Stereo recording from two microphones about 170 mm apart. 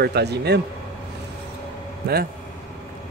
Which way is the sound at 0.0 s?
75° right (ahead or behind).